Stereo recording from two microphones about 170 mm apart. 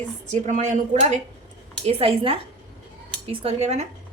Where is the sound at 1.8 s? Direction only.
35° right (ahead or behind).